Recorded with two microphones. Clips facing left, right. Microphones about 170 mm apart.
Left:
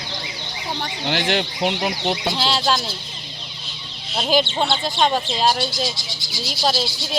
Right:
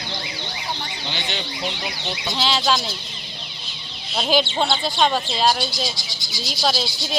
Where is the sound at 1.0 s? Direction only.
85° left; by 2.3 s 55° left (ahead or behind).